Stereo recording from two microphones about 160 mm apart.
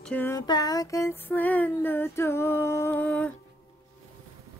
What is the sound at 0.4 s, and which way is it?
Female singing, 25° left (ahead or behind).